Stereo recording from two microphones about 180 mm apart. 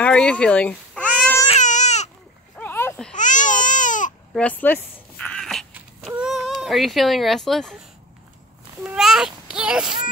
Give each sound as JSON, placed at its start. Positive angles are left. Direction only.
{"t": 0.0, "sound": "speech", "side_deg": 5}
{"t": 1.5, "sound": "baby cry", "side_deg": 40}
{"t": 2.5, "sound": "a sound", "side_deg": 10}
{"t": 3.2, "sound": "baby cry", "side_deg": 45}
{"t": 4.3, "sound": "a sound", "side_deg": 5}
{"t": 8.8, "sound": "a child's voice", "side_deg": -5}